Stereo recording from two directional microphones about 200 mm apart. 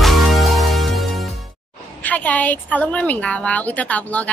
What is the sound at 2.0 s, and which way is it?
A woman's voice, 10° left (ahead or behind).